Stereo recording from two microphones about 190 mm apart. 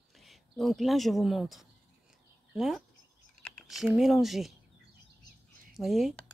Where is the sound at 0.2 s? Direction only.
Centre (ahead or behind).